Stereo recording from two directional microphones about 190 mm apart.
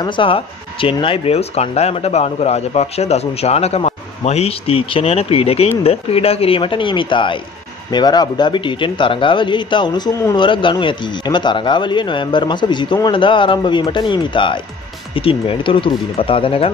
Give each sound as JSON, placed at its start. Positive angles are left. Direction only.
{"t": 0.0, "sound": "speech", "side_deg": 25}